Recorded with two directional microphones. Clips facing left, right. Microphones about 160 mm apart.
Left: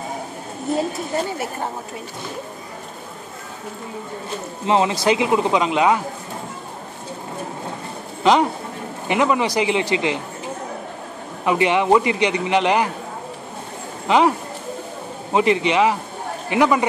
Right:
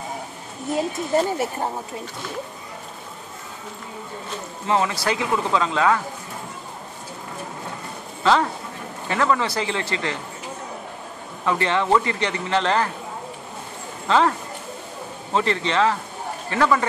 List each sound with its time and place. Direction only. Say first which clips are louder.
4.6 s speech: left 4 dB; 20° left (ahead or behind)
8.2 s a man's voice: left 3 dB; 15° left (ahead or behind)
11.4 s a man's voice: left 4 dB; 15° left (ahead or behind)
14.0 s speech: left 3 dB; 15° left (ahead or behind)
15.3 s a man's voice: left 4 dB; 15° left (ahead or behind)